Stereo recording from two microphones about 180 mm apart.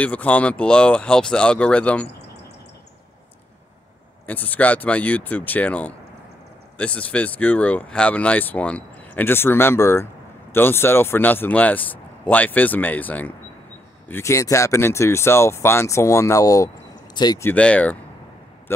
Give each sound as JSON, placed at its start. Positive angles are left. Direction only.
{"t": 0.0, "sound": "speech", "side_deg": 5}
{"t": 4.3, "sound": "speech", "side_deg": 10}
{"t": 17.5, "sound": "speech", "side_deg": 5}